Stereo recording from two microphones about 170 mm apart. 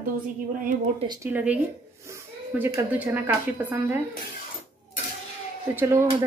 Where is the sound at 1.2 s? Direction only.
10° right (ahead or behind).